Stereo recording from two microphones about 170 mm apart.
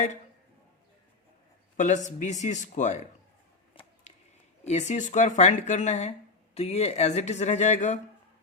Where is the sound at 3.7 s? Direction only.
30° left (ahead or behind).